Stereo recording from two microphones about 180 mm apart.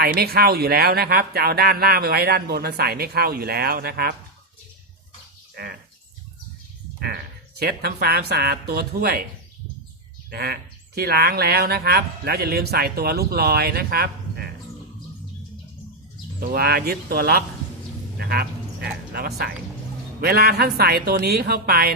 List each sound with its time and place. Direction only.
0.0 s speech: 60° right (ahead or behind)
5.6 s speech: 60° right (ahead or behind)
7.0 s speech: 60° right (ahead or behind)
10.2 s speech: 60° right (ahead or behind)
16.4 s speech: 55° right (ahead or behind)
18.2 s a sound: 60° right (ahead or behind)
20.2 s speech: 60° right (ahead or behind)